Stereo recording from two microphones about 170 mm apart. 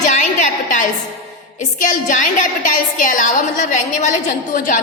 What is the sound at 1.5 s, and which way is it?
A woman's voice, 50° left (ahead or behind).